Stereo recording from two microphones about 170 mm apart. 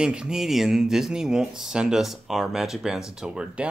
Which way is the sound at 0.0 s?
5° right (ahead or behind).